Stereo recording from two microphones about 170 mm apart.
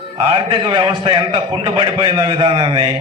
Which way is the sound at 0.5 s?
30° right (ahead or behind).